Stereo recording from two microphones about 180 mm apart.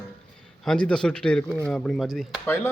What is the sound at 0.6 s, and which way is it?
Speech, 5° left (ahead or behind).